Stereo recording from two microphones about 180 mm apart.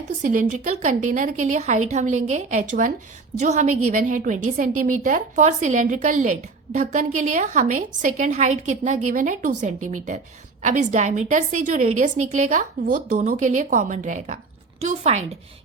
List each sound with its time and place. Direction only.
0.2 s a woman's voice: 45° right (ahead or behind)